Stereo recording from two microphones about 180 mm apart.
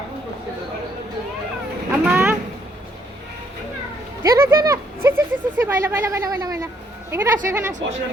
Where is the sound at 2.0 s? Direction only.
5° right (ahead or behind).